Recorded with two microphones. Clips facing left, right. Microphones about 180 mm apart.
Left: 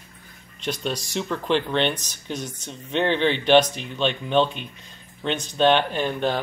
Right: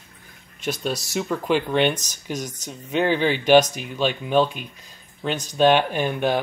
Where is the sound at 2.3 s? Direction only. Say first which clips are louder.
Right 1 dB; 40° right (ahead or behind).